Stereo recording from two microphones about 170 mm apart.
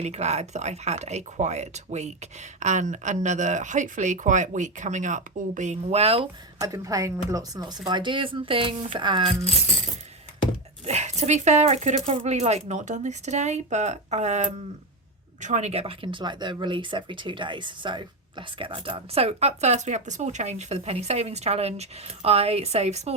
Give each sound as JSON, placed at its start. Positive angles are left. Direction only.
{"t": 0.0, "sound": "speech", "side_deg": -40}
{"t": 6.6, "sound": "speech", "side_deg": -20}
{"t": 10.8, "sound": "speech", "side_deg": -40}